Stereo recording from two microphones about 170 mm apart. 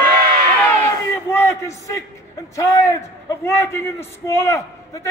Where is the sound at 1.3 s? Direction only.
15° left (ahead or behind).